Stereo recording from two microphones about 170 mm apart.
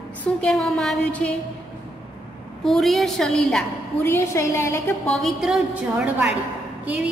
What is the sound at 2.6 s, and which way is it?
Music, centre (ahead or behind).